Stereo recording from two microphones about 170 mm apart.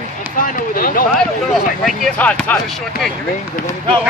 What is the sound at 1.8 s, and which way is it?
Speech, 5° left (ahead or behind).